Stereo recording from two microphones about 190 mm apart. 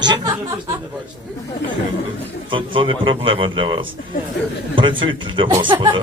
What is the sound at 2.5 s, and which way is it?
A man's voice, 25° right (ahead or behind).